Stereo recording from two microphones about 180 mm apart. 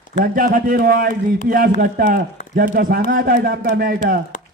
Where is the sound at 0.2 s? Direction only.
50° right (ahead or behind).